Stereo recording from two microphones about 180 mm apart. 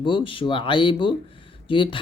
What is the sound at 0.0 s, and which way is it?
Speech, 30° left (ahead or behind).